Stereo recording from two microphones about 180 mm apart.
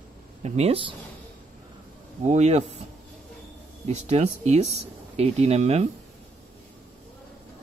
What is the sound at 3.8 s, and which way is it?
Speech, 40° right (ahead or behind).